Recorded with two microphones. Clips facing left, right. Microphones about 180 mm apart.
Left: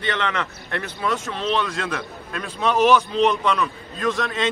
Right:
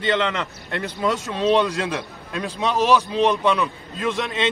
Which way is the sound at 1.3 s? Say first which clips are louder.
Right 5 dB; 15° right (ahead or behind).